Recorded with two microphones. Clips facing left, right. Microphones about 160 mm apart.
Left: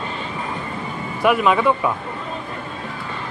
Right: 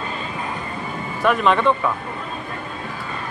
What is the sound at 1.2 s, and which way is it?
Speech, 10° left (ahead or behind).